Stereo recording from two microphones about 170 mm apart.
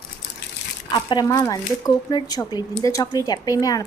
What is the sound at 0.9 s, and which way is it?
Speech, 25° left (ahead or behind).